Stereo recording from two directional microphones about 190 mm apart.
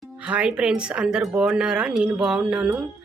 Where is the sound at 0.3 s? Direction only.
5° right (ahead or behind).